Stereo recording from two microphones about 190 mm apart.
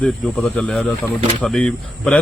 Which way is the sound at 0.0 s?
5° left (ahead or behind).